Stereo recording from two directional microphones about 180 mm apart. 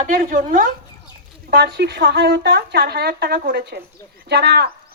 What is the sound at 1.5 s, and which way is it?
A woman's voice, 65° right (ahead or behind).